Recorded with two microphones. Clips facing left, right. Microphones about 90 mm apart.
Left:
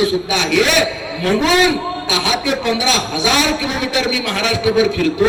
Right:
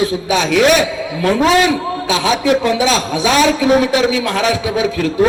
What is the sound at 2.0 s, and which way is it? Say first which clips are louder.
A man's voice: right 5 dB; 40° right (ahead or behind).